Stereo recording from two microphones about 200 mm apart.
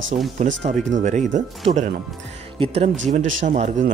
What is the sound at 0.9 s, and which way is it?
Speech, 35° right (ahead or behind).